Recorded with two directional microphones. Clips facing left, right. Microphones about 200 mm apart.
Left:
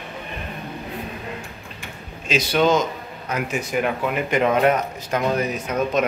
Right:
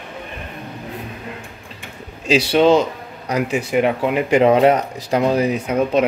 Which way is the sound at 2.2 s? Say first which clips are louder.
Right 5 dB; 30° right (ahead or behind).